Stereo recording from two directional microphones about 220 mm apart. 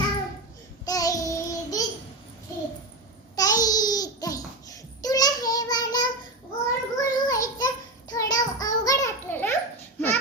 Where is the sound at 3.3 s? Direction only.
15° left (ahead or behind).